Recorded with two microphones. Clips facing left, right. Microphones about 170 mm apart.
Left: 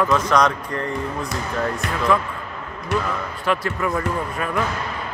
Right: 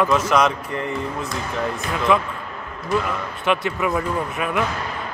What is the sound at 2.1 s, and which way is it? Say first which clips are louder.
Speech: right 1 dB; 15° right (ahead or behind).